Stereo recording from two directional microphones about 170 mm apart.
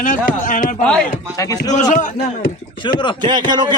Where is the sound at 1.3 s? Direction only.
20° left (ahead or behind).